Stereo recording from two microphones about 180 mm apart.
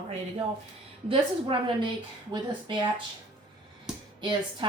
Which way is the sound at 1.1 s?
30° right (ahead or behind).